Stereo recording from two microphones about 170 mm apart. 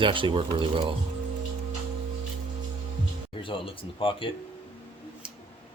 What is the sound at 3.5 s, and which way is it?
Speech, 30° left (ahead or behind).